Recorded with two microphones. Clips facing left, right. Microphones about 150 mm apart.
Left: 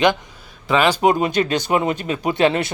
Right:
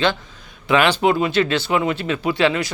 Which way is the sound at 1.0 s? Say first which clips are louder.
Left 1 dB; 40° left (ahead or behind).